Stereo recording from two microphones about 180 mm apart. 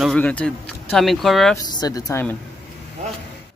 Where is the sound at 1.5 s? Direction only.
20° left (ahead or behind).